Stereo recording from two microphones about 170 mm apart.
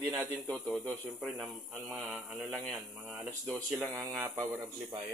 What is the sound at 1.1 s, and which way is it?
Mantra, centre (ahead or behind).